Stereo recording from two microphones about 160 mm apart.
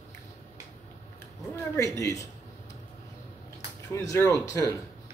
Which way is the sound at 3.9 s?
20° left (ahead or behind).